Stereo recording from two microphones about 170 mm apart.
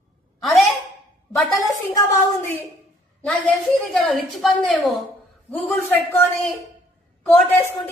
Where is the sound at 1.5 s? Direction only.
20° left (ahead or behind).